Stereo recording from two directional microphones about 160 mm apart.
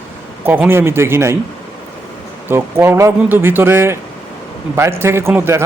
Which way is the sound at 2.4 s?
15° right (ahead or behind).